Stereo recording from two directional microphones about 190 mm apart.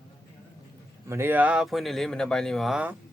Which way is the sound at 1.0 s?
15° right (ahead or behind).